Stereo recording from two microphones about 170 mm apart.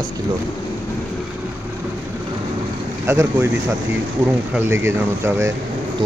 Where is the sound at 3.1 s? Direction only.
15° right (ahead or behind).